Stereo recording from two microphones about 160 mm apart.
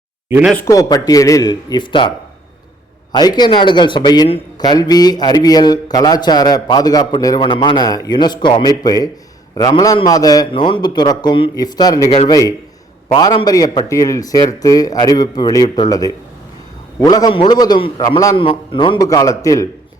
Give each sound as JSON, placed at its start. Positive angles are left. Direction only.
{"t": 0.7, "sound": "a man's voice", "side_deg": 25}